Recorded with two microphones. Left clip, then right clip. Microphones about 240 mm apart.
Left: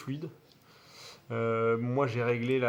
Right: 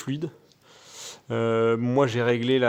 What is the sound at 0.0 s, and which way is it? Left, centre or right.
Speech, right.